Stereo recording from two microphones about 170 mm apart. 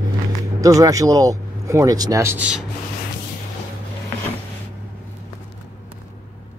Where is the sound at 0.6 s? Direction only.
20° right (ahead or behind).